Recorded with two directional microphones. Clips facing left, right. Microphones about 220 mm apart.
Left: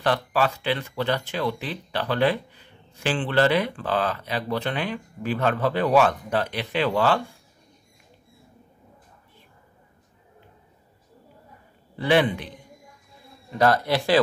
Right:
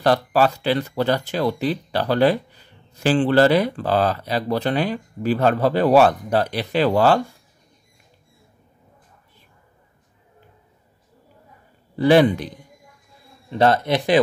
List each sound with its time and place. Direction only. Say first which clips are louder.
0.0 s speech: right 5 dB; 40° right (ahead or behind)
12.0 s speech: right 6 dB; 40° right (ahead or behind)
13.5 s speech: right 3 dB; 25° right (ahead or behind)